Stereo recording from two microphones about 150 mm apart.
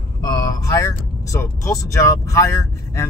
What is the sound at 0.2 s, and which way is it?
Speech, 25° left (ahead or behind).